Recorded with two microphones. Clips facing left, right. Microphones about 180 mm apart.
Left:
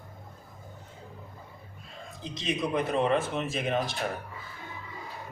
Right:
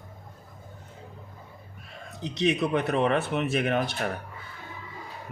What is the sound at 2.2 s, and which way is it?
Speech, 70° right (ahead or behind).